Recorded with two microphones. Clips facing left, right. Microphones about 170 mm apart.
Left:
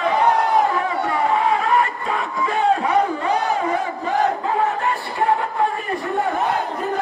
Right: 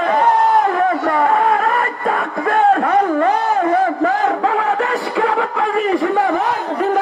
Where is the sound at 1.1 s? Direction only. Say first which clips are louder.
Right 1 dB; 55° right (ahead or behind).